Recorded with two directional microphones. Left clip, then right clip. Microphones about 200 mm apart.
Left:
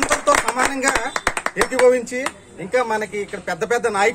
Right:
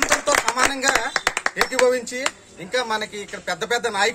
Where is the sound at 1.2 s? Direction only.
50° right (ahead or behind).